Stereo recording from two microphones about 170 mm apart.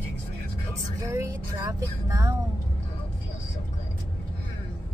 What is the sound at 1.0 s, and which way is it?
Speech, 20° right (ahead or behind).